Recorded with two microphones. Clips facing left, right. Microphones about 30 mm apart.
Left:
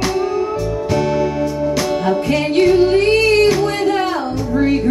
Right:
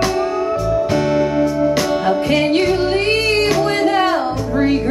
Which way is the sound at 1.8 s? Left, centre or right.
Centre.